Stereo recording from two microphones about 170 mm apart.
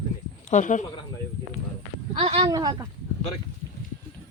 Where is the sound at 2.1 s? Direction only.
35° right (ahead or behind).